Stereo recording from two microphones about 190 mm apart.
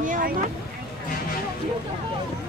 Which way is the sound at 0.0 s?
45° right (ahead or behind).